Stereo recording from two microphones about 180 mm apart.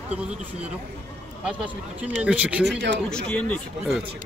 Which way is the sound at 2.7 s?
70° right (ahead or behind).